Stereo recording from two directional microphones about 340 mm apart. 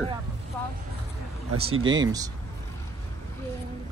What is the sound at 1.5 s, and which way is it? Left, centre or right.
Speech, right.